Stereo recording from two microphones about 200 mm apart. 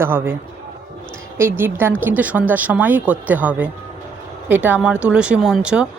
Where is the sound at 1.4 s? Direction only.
10° right (ahead or behind).